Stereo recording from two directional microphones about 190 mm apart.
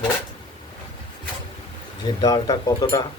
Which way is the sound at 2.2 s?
20° left (ahead or behind).